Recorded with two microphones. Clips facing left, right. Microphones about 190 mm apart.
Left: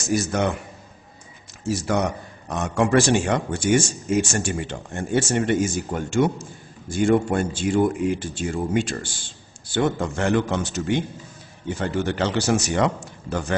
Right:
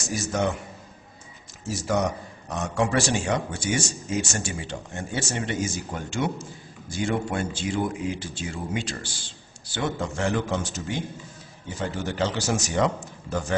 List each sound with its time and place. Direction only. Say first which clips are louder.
0.0 s a man's voice: left 4 dB; 60° left (ahead or behind)
1.7 s a man's voice: left 2 dB; 65° left (ahead or behind)